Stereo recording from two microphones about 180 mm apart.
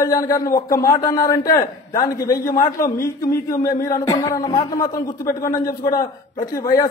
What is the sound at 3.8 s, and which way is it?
A man's voice, 20° left (ahead or behind).